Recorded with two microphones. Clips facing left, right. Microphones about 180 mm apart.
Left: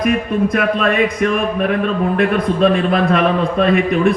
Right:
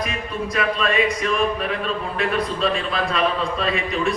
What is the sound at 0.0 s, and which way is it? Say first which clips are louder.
Speech: left 11 dB; 55° left (ahead or behind).